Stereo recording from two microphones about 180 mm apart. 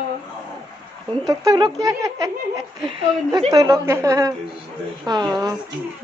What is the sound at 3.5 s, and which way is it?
A woman's voice, 20° right (ahead or behind).